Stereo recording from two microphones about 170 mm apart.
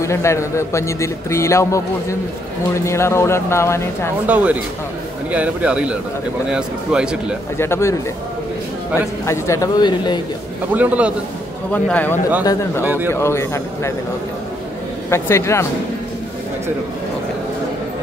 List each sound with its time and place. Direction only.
0.0 s a man's voice: 15° left (ahead or behind)
4.3 s speech: 10° right (ahead or behind)
7.5 s a man's voice: 15° left (ahead or behind)
9.2 s speech: 15° left (ahead or behind)
10.7 s speech: 10° right (ahead or behind)
11.7 s a man's voice: 10° left (ahead or behind)
12.8 s speech: 10° right (ahead or behind)
13.1 s a man's voice: 15° left (ahead or behind)
15.0 s a man's voice: 15° left (ahead or behind)